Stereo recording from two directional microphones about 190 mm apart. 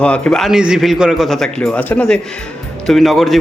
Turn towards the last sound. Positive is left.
turn(degrees=0)  # may be behind; listen again after turning